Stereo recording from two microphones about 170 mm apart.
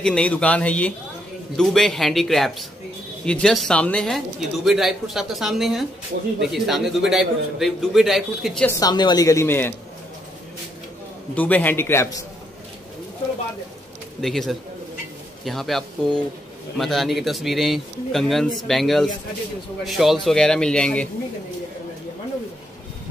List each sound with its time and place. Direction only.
0.0 s a man's voice: 5° left (ahead or behind)
8.6 s speech: 20° left (ahead or behind)
11.3 s a man's voice: 10° left (ahead or behind)
14.2 s speech: centre (ahead or behind)